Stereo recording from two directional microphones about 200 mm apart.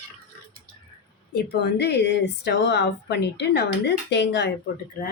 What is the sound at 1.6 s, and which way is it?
A woman's voice, 55° left (ahead or behind).